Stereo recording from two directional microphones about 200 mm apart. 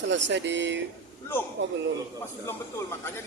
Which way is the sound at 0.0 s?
65° right (ahead or behind).